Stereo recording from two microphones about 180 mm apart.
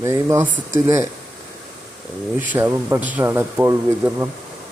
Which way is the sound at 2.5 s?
15° right (ahead or behind).